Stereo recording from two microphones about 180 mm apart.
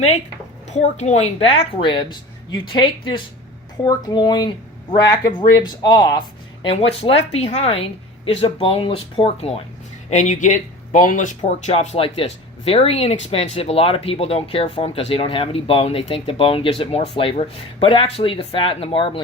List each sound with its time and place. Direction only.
0.7 s speech: 40° left (ahead or behind)